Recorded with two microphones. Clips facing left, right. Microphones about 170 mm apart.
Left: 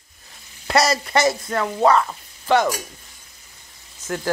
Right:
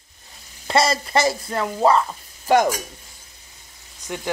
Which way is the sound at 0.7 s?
25° right (ahead or behind).